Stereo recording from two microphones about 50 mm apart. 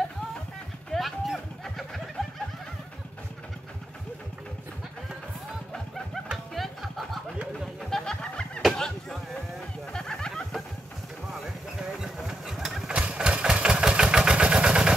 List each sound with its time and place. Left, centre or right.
0.9 s a sound: centre
2.2 s snicker: centre
5.7 s music: centre
7.9 s music: centre
8.7 s chop: centre
9.9 s a sound: centre
12.2 s engine: centre
12.8 s engine: right